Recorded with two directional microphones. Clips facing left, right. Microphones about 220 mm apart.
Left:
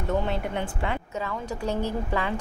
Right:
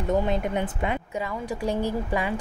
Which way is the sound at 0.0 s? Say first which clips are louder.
Right 3 dB; 15° right (ahead or behind).